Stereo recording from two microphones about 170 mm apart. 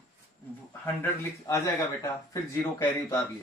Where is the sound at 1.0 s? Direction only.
15° left (ahead or behind).